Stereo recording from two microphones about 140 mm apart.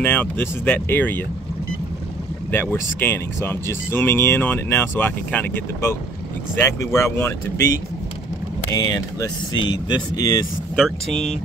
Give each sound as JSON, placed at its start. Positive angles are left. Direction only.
{"t": 0.0, "sound": "speech", "side_deg": 15}
{"t": 2.5, "sound": "speech", "side_deg": 15}
{"t": 8.7, "sound": "speech", "side_deg": 30}